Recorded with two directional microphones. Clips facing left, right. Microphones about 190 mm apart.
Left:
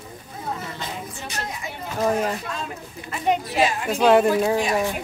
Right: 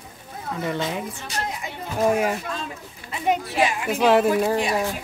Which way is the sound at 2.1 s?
10° right (ahead or behind).